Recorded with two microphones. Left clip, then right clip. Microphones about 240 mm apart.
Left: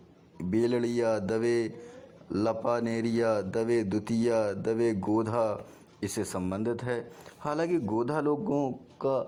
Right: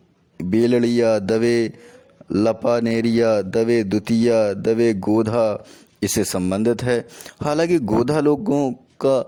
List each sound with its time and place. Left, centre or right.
0.3 s mantra: right
6.0 s a man's voice: right